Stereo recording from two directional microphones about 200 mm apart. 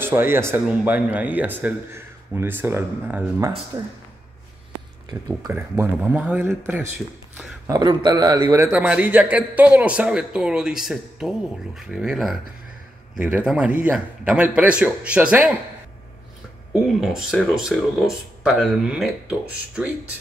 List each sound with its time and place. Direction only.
0.0 s a man's voice: 10° right (ahead or behind)
5.4 s a man's voice: 10° right (ahead or behind)
8.6 s a man's voice: 5° right (ahead or behind)
17.0 s a man's voice: centre (ahead or behind)